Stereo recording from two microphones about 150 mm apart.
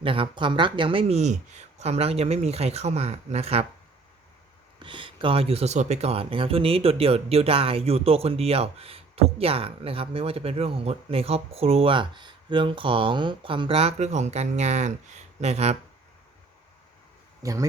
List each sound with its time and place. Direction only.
0.0 s speech: 35° right (ahead or behind)
4.8 s speech: 35° right (ahead or behind)
17.4 s speech: 20° right (ahead or behind)